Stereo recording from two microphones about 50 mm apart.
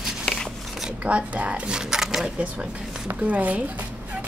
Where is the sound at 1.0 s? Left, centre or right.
Right.